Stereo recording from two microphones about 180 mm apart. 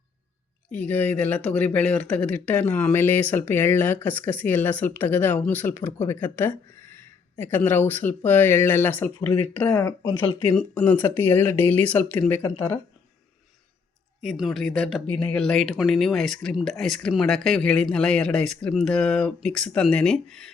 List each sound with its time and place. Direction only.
0.7 s speech: 10° left (ahead or behind)
10.5 s speech: 5° left (ahead or behind)
14.2 s speech: centre (ahead or behind)